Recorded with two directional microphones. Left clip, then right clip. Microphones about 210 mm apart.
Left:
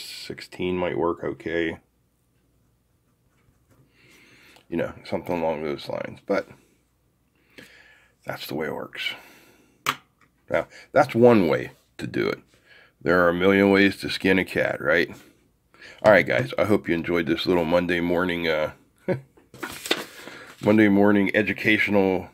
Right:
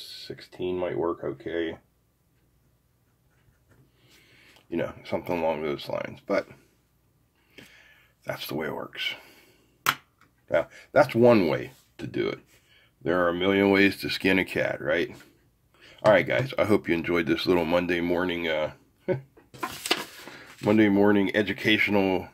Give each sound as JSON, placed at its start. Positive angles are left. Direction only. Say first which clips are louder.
{"t": 0.0, "sound": "speech", "louder": "left 4 dB", "side_deg": 35}
{"t": 4.3, "sound": "speech", "louder": "left 2 dB", "side_deg": 20}
{"t": 7.5, "sound": "a sound", "louder": "left 3 dB", "side_deg": 15}
{"t": 10.5, "sound": "speech", "louder": "left 1 dB", "side_deg": 15}
{"t": 20.2, "sound": "speech", "louder": "left 3 dB", "side_deg": 15}